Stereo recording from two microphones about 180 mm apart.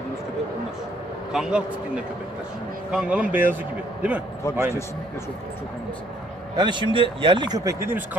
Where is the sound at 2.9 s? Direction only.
5° right (ahead or behind).